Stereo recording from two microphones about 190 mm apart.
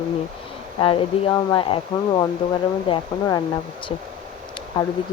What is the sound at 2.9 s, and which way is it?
Speech, 25° left (ahead or behind).